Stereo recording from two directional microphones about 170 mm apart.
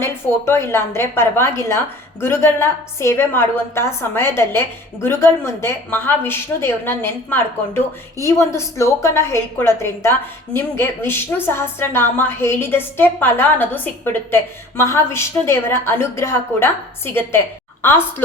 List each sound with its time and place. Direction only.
0.0 s a woman's voice: 15° left (ahead or behind)